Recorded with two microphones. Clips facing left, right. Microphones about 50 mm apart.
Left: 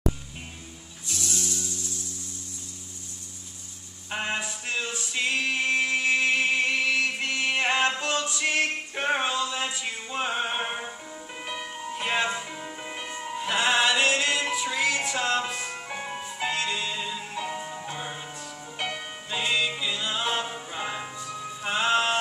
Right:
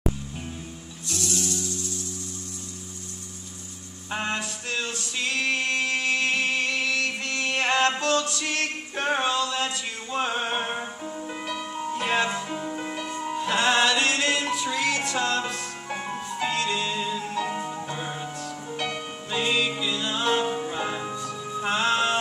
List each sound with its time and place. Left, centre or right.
1.0 s music: left
4.2 s singing: centre
11.8 s music: centre
12.9 s music: left
13.3 s music: centre
17.5 s music: centre
17.9 s music: centre